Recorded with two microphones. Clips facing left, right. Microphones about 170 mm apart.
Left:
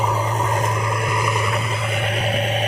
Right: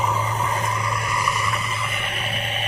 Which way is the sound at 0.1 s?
35° left (ahead or behind).